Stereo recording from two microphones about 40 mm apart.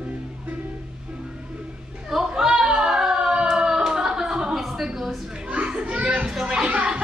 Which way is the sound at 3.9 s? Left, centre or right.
Centre.